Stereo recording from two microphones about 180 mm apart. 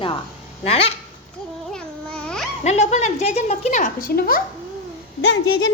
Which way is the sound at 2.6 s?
40° left (ahead or behind).